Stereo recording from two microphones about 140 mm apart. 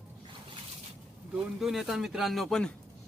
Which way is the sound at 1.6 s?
Centre (ahead or behind).